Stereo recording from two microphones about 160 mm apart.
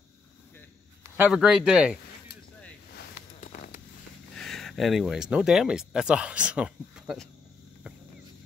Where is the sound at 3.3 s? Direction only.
60° left (ahead or behind).